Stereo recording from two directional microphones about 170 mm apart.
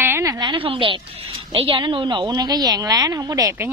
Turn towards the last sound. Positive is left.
turn(degrees=-20)  # may be behind; listen again after turning